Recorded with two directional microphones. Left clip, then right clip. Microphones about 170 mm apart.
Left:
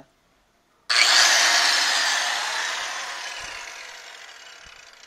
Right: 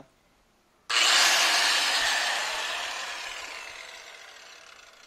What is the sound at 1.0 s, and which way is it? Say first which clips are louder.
Tools: left 4 dB; 5° left (ahead or behind).